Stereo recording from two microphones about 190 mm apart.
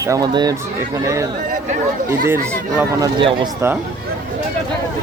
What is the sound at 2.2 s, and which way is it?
Speech, 15° right (ahead or behind).